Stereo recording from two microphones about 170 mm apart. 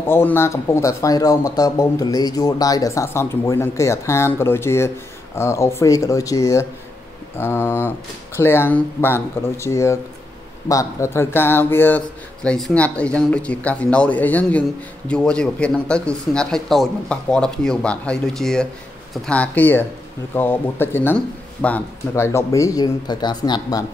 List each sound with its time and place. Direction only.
0.0 s speech: 10° left (ahead or behind)